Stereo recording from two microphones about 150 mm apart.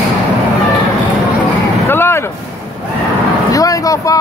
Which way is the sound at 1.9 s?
15° left (ahead or behind).